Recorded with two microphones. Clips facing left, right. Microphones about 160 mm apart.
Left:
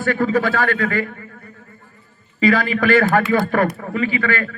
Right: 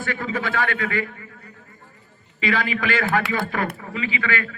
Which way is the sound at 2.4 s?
45° left (ahead or behind).